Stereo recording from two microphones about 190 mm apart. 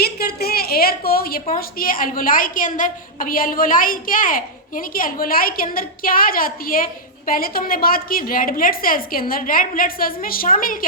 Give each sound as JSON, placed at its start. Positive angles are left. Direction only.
{"t": 0.0, "sound": "a woman's voice", "side_deg": 55}